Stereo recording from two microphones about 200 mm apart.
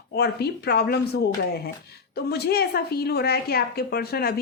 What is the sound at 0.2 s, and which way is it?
Speech, 55° left (ahead or behind).